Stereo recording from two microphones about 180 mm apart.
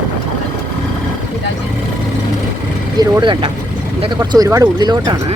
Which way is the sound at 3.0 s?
25° right (ahead or behind).